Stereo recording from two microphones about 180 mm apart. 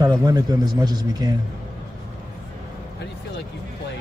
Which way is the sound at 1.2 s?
20° right (ahead or behind).